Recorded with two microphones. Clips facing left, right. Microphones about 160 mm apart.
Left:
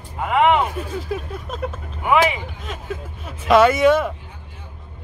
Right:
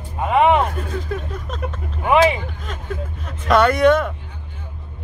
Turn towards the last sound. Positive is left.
turn(degrees=5)  # may be behind; listen again after turning